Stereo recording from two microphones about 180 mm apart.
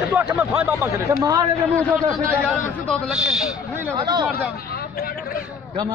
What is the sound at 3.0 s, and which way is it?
Speech, 5° right (ahead or behind).